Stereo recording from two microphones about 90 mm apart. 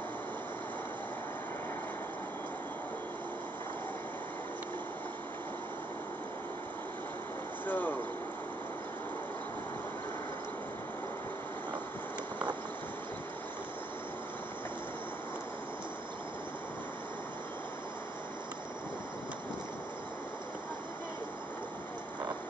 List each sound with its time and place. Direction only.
7.6 s vehicle: 20° left (ahead or behind)